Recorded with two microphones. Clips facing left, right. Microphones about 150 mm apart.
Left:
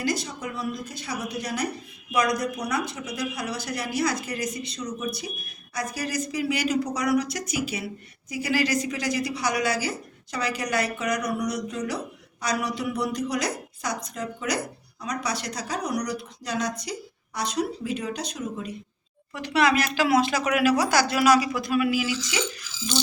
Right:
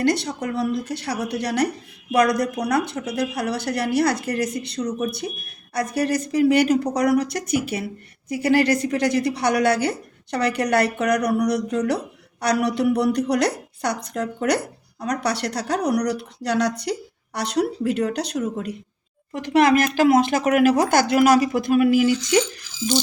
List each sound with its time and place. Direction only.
0.0 s speech: 65° right (ahead or behind)
19.3 s speech: 50° right (ahead or behind)